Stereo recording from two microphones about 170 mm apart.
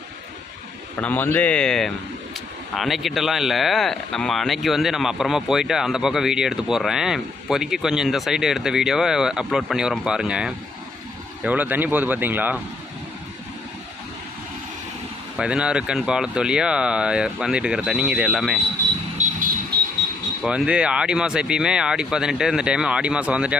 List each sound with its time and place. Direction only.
0.9 s speech: 10° left (ahead or behind); by 12.5 s 10° right (ahead or behind)
15.4 s speech: 5° right (ahead or behind)
19.2 s vehicle: 45° right (ahead or behind)
20.4 s speech: 5° right (ahead or behind)